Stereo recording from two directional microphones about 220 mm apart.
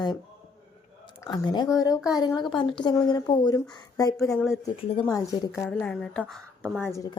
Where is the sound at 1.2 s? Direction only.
20° left (ahead or behind).